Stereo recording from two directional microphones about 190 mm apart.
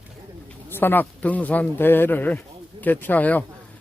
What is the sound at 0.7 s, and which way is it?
Speech, 10° left (ahead or behind).